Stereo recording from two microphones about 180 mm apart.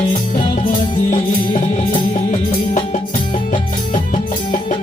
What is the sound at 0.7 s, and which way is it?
Music, 45° left (ahead or behind).